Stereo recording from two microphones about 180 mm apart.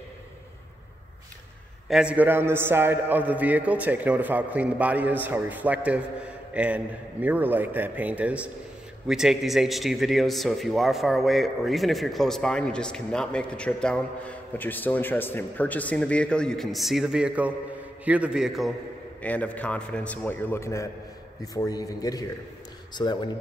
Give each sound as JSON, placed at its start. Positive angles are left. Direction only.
{"t": 1.9, "sound": "a man's voice", "side_deg": -5}
{"t": 19.2, "sound": "a man's voice", "side_deg": 10}